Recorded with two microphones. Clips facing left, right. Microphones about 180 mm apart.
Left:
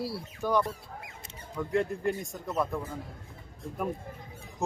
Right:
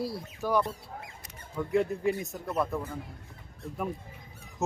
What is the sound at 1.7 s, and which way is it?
Speech, centre (ahead or behind).